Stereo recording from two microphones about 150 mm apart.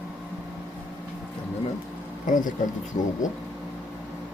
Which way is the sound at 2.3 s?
60° left (ahead or behind).